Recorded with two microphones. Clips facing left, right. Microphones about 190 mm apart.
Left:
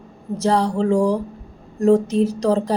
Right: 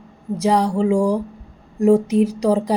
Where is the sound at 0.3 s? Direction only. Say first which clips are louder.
Right 1 dB; 15° right (ahead or behind).